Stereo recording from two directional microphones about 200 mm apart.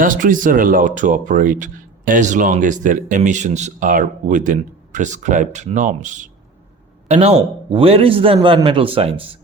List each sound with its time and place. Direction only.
0.0 s a man's voice: 40° right (ahead or behind)